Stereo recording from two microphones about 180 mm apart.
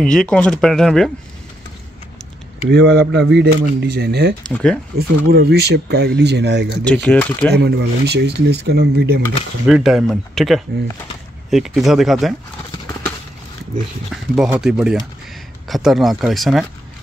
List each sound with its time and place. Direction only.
0.0 s speech: 5° left (ahead or behind)
2.7 s speech: 70° right (ahead or behind)
4.5 s speech: 5° left (ahead or behind)
4.9 s speech: 60° right (ahead or behind)
6.8 s speech: 10° left (ahead or behind)
7.5 s speech: 65° right (ahead or behind)
9.7 s speech: centre (ahead or behind)
14.1 s speech: 5° right (ahead or behind)